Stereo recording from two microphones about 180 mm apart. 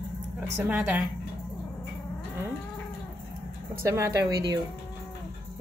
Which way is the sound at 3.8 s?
15° right (ahead or behind).